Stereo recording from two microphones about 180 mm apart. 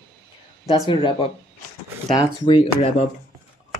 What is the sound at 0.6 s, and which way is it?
Speech, 25° left (ahead or behind).